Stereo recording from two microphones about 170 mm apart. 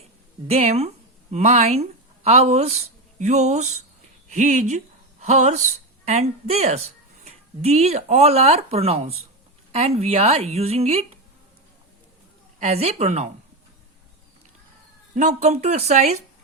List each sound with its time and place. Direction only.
0.4 s speech: 40° right (ahead or behind)
12.5 s speech: 40° right (ahead or behind)
15.1 s speech: 45° right (ahead or behind)